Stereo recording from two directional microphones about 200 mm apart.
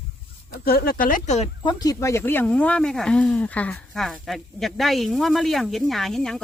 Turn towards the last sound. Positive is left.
turn(degrees=0)  # may be behind; listen again after turning